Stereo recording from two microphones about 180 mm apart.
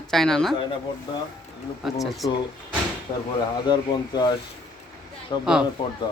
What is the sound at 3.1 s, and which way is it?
Speech, 30° left (ahead or behind).